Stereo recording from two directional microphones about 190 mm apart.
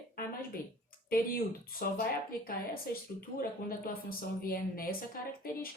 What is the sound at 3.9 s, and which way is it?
Speech, 50° left (ahead or behind).